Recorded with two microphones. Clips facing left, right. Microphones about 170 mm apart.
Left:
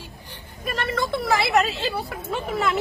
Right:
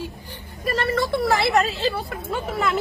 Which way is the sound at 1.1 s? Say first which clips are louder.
Even; centre (ahead or behind).